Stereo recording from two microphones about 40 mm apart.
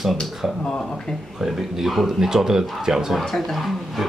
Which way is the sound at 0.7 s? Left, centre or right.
Centre.